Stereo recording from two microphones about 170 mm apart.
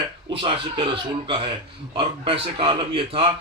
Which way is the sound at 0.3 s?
30° right (ahead or behind).